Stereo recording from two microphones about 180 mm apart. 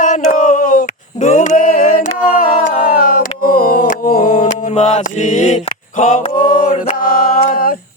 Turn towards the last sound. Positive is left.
turn(degrees=50)  # may be behind; listen again after turning